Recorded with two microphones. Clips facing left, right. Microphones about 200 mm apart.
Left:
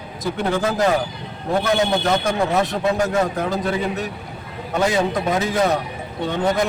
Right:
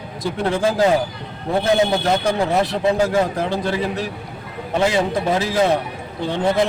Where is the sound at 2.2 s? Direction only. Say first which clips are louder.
Right 1 dB; 30° right (ahead or behind).